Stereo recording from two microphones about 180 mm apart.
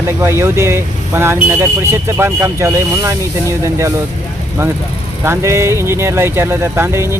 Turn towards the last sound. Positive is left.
turn(degrees=-15)  # may be behind; listen again after turning